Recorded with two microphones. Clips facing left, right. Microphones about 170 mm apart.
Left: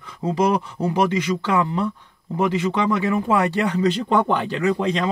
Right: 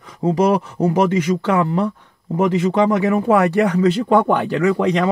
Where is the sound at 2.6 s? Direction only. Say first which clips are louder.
Right 5 dB; 40° right (ahead or behind).